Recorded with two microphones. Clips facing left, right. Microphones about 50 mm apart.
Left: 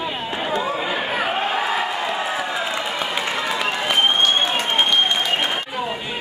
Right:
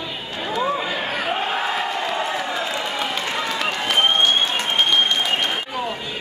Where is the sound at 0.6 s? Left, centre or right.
Centre.